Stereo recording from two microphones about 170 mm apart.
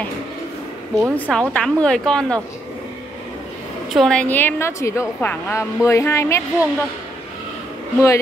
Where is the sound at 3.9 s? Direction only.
5° left (ahead or behind).